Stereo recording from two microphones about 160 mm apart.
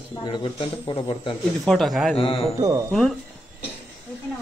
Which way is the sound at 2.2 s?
35° left (ahead or behind).